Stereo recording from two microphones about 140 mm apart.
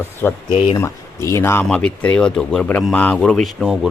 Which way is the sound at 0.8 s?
20° left (ahead or behind).